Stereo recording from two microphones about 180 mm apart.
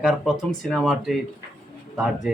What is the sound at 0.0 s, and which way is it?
Speech, centre (ahead or behind).